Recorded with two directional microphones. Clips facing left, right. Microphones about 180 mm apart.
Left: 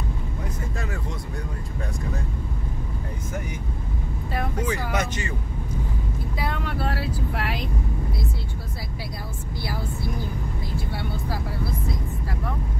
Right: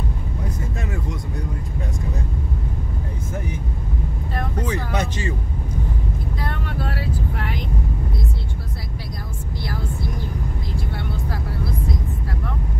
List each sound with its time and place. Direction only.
4.9 s speech: 30° right (ahead or behind)
6.9 s speech: 90° left